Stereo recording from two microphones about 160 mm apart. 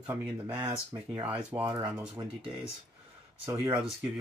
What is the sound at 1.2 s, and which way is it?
Speech, 10° right (ahead or behind).